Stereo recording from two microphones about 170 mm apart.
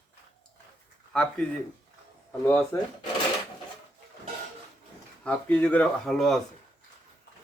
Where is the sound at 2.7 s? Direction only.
20° left (ahead or behind).